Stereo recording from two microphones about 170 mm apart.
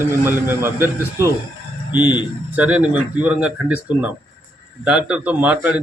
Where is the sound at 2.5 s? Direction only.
10° right (ahead or behind).